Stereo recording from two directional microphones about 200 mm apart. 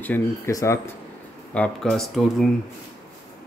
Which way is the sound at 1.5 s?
5° left (ahead or behind).